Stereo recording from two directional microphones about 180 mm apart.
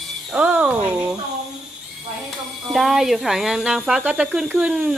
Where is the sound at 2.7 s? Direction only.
Centre (ahead or behind).